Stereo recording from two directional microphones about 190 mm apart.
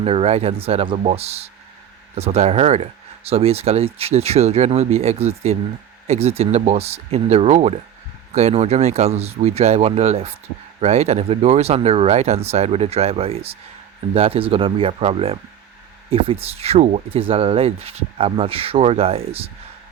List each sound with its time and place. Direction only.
0.0 s speech: 30° right (ahead or behind)